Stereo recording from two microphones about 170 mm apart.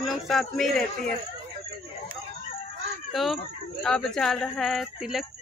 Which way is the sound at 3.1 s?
Centre (ahead or behind).